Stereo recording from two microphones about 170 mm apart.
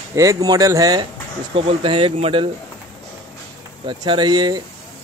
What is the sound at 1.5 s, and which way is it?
Speech, 30° right (ahead or behind).